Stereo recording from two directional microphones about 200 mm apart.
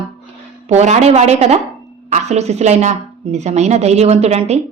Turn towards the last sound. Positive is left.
turn(degrees=-30)  # may be behind; listen again after turning